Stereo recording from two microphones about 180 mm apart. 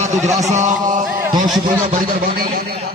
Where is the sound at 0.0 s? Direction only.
40° right (ahead or behind).